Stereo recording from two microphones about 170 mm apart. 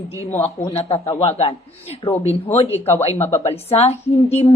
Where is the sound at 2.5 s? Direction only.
35° left (ahead or behind).